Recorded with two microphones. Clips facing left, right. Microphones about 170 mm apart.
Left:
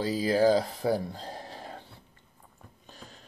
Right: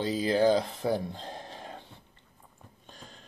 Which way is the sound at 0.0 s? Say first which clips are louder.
Left 1 dB; 5° left (ahead or behind).